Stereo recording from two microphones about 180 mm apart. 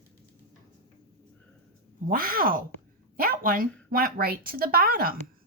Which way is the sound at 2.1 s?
55° right (ahead or behind).